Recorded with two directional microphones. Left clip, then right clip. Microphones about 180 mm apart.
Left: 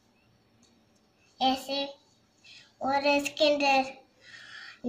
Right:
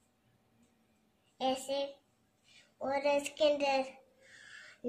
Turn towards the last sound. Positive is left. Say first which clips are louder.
# left 7 dB
turn(degrees=-25)  # may be behind; listen again after turning